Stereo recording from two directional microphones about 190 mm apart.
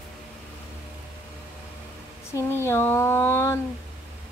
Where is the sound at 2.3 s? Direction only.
15° left (ahead or behind).